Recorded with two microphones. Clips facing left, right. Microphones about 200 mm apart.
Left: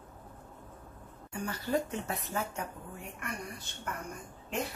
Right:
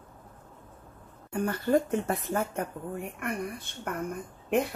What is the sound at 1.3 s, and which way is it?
Speech, 55° right (ahead or behind).